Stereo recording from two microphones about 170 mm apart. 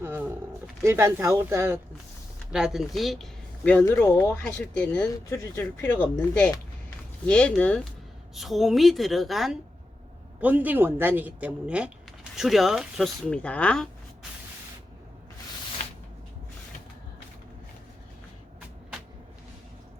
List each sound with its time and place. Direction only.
0.0 s roaring cats: 10° right (ahead or behind)
0.8 s speech: 15° right (ahead or behind)
2.5 s speech: 5° right (ahead or behind)
5.1 s speech: 15° left (ahead or behind)